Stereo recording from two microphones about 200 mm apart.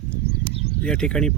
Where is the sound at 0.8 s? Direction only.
5° left (ahead or behind).